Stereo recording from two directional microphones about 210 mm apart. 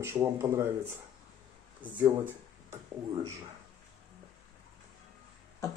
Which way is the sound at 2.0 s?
10° right (ahead or behind).